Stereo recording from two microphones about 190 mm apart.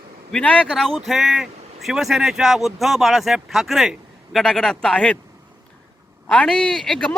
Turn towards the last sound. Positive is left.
turn(degrees=5)  # may be behind; listen again after turning